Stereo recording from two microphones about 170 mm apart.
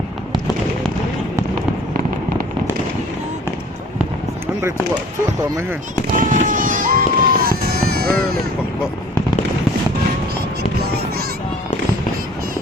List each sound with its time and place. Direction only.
6.1 s music: 50° right (ahead or behind)